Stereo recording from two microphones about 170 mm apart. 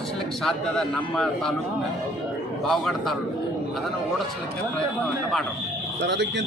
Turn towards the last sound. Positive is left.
turn(degrees=-90)